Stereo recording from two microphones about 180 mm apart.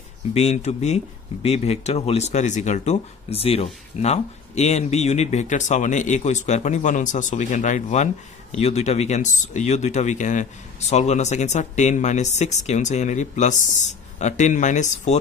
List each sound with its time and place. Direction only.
0.3 s speech: 40° left (ahead or behind)